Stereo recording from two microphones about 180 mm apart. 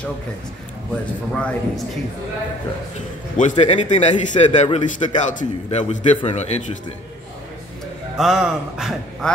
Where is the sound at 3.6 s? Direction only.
40° left (ahead or behind).